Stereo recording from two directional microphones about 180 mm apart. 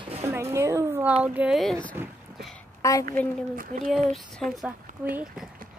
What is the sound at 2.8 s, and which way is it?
Speech, 20° left (ahead or behind).